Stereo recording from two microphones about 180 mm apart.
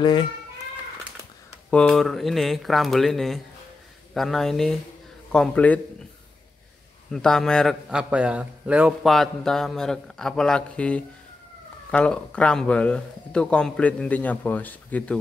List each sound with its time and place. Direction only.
0.0 s speech: 25° left (ahead or behind)
1.7 s a man's voice: 5° left (ahead or behind)
7.1 s a man's voice: 5° left (ahead or behind)